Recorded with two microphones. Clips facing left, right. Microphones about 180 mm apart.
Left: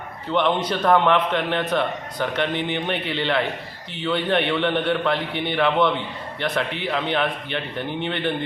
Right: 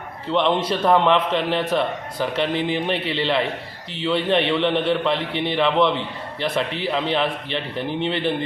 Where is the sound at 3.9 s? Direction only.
30° right (ahead or behind).